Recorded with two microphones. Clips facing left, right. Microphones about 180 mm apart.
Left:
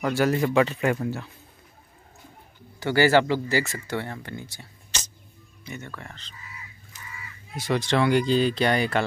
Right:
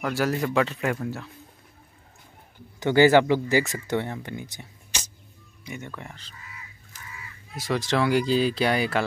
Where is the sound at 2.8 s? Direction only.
20° right (ahead or behind).